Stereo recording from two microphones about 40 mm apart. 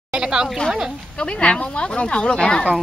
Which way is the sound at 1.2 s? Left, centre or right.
Left.